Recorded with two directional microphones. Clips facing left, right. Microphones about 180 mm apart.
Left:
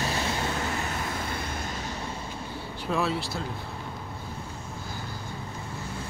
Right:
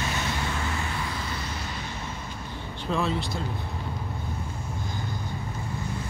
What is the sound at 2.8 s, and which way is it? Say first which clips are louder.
Speech: right 1 dB; 5° left (ahead or behind).